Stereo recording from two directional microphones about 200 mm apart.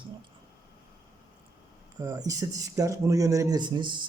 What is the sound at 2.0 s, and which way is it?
Speech, 15° right (ahead or behind).